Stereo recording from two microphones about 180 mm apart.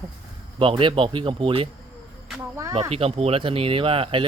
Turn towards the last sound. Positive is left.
turn(degrees=-30)  # may be behind; listen again after turning